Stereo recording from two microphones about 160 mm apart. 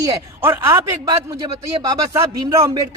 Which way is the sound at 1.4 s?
25° right (ahead or behind).